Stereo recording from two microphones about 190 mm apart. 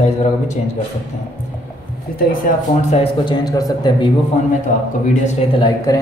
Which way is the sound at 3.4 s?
20° left (ahead or behind).